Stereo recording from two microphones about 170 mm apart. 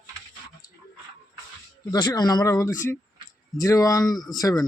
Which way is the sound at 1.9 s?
25° left (ahead or behind).